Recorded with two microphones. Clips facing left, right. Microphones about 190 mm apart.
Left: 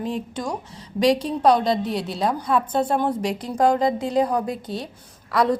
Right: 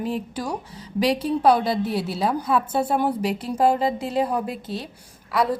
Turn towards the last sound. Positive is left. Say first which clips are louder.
# left 2 dB
turn(degrees=-5)  # may be behind; listen again after turning